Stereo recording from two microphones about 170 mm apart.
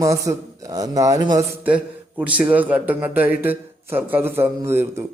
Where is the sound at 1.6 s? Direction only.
10° right (ahead or behind).